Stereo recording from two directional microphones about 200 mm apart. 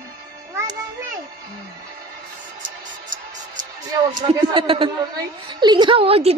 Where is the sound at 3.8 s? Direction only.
20° right (ahead or behind).